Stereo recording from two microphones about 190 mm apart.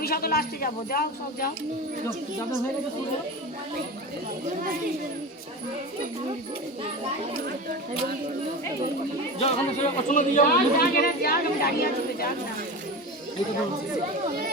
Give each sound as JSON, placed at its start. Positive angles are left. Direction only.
{"t": 0.0, "sound": "speech", "side_deg": 50}
{"t": 9.4, "sound": "speech", "side_deg": 35}